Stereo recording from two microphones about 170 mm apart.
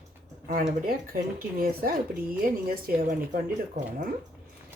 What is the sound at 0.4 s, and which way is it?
Speech, 55° right (ahead or behind).